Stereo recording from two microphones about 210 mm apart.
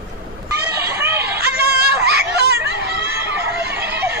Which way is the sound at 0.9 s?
10° right (ahead or behind).